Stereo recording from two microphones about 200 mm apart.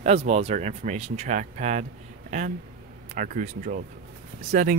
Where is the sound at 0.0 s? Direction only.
30° right (ahead or behind).